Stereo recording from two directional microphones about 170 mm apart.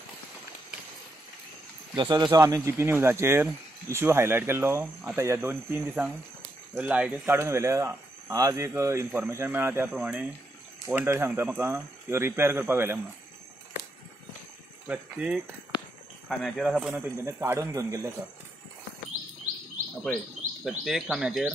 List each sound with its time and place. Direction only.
2.0 s speech: 25° right (ahead or behind)
14.9 s speech: 5° right (ahead or behind)
20.6 s speech: centre (ahead or behind)